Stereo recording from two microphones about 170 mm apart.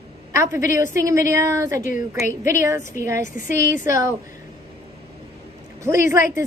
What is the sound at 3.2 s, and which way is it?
Speech, 50° left (ahead or behind).